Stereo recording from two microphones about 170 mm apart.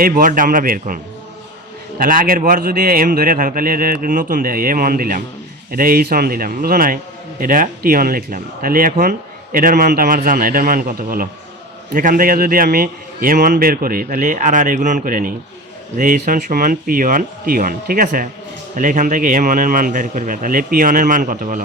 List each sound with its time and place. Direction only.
0.0 s a man's voice: 50° right (ahead or behind)
2.0 s a man's voice: 55° right (ahead or behind)